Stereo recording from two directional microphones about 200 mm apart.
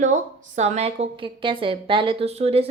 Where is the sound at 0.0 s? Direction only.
40° right (ahead or behind).